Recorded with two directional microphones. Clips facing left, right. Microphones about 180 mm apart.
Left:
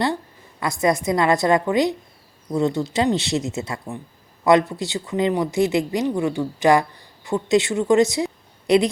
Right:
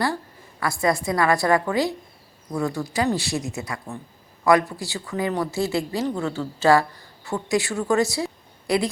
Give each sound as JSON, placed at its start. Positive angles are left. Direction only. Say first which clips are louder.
{"t": 0.6, "sound": "a woman's voice", "louder": "left 2 dB", "side_deg": 20}